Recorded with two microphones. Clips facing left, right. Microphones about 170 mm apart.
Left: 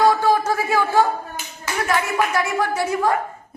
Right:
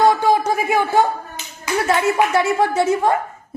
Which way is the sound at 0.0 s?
15° right (ahead or behind).